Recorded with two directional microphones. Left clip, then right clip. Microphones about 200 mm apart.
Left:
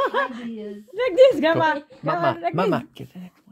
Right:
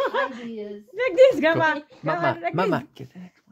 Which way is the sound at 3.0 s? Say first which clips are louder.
Left 2 dB; 10° left (ahead or behind).